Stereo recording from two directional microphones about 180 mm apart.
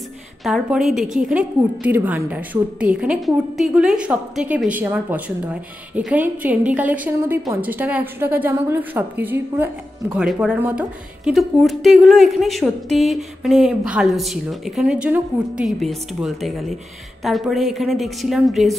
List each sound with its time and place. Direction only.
0.4 s a woman's voice: centre (ahead or behind)
1.0 s a woman's voice: 45° right (ahead or behind)
1.3 s a woman's voice: 5° right (ahead or behind)